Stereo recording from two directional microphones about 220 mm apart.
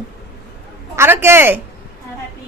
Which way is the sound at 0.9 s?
10° right (ahead or behind).